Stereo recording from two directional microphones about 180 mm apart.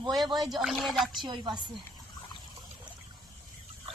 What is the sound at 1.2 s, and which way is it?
Speech, 25° right (ahead or behind).